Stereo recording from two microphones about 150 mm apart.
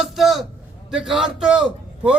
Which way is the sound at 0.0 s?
Centre (ahead or behind).